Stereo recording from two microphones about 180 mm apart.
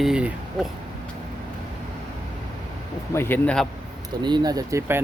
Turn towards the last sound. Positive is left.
turn(degrees=-20)  # may be behind; listen again after turning